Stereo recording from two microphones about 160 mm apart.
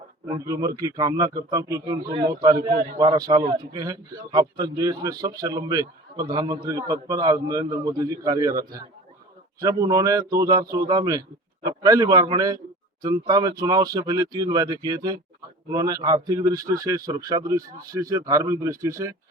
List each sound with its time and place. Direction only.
0.3 s a man's voice: 20° right (ahead or behind)